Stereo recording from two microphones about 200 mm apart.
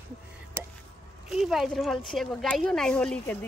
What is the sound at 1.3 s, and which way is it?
Speech, centre (ahead or behind).